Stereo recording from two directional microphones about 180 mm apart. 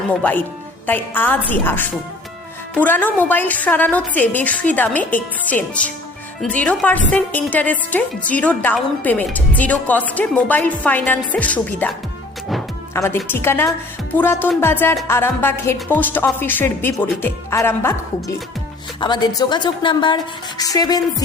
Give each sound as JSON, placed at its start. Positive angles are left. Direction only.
{"t": 0.1, "sound": "a woman's voice", "side_deg": 10}
{"t": 12.9, "sound": "a woman's voice", "side_deg": 15}